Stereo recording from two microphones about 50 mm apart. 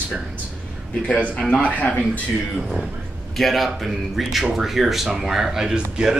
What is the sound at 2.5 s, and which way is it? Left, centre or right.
Speech, centre.